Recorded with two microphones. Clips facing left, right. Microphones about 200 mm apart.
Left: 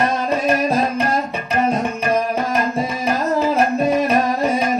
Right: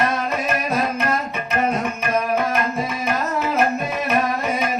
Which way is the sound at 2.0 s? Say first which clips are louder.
Right 1 dB; 35° left (ahead or behind).